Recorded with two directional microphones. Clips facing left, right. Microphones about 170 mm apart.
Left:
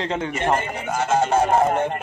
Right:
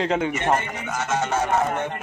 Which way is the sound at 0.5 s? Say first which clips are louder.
Left 2 dB; 30° left (ahead or behind).